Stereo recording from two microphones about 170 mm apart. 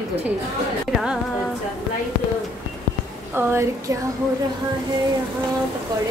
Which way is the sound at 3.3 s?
15° right (ahead or behind).